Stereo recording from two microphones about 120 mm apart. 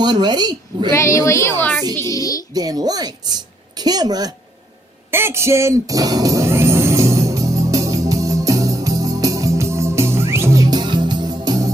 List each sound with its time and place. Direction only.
0.0 s a woman's voice: 35° right (ahead or behind)
0.9 s a woman's voice: 25° left (ahead or behind)
2.0 s a woman's voice: 25° left (ahead or behind)
2.5 s a woman's voice: 30° right (ahead or behind)
5.1 s music: 20° right (ahead or behind)